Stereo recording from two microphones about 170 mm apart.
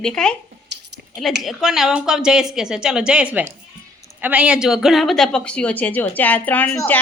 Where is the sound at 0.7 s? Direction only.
80° right.